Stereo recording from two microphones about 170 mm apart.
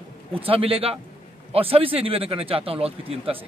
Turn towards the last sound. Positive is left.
turn(degrees=-35)  # may be behind; listen again after turning